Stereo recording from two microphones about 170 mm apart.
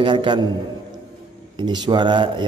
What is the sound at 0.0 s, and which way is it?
Speech, 30° right (ahead or behind).